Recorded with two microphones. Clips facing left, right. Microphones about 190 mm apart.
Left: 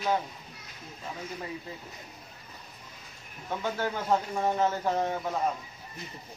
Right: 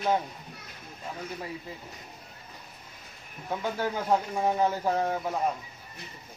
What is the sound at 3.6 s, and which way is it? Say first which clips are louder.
A man's voice: right 1 dB; 10° right (ahead or behind).